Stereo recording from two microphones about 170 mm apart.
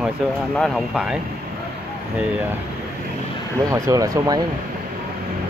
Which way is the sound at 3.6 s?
20° right (ahead or behind).